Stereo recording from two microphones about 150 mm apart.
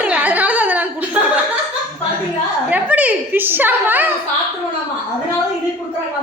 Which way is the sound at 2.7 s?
10° right (ahead or behind).